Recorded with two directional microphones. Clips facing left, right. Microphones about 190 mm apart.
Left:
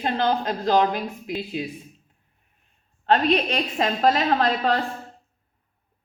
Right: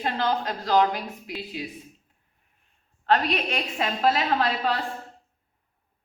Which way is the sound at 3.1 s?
30° left (ahead or behind).